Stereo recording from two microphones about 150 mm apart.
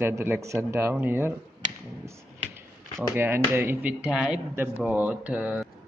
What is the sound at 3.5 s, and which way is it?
Speech, 10° right (ahead or behind).